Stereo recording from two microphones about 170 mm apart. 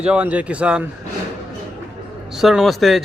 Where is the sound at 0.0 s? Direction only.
5° right (ahead or behind).